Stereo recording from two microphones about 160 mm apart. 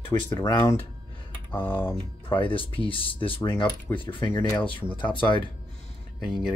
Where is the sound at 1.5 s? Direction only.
10° left (ahead or behind).